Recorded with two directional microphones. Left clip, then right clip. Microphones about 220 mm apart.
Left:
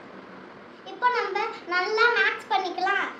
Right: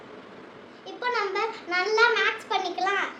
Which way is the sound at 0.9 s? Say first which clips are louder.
Left 3 dB; 20° right (ahead or behind).